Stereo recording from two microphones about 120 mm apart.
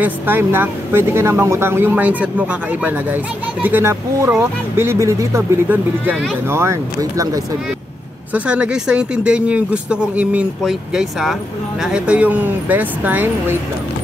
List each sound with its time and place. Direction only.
0.0 s speech: 15° right (ahead or behind)
8.3 s speech: 10° right (ahead or behind)